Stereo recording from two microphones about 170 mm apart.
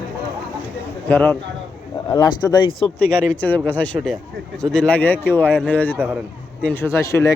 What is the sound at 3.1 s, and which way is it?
Speech, 10° left (ahead or behind).